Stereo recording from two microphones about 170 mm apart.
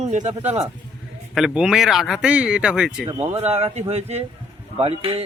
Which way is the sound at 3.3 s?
35° right (ahead or behind).